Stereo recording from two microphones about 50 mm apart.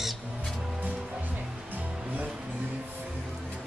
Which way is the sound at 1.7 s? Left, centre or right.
Right.